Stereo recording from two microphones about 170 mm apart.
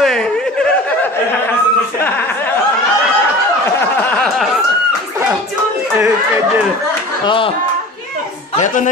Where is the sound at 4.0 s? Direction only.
Centre (ahead or behind).